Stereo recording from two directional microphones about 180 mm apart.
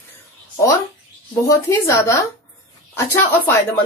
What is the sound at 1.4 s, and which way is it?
Speech, 15° left (ahead or behind).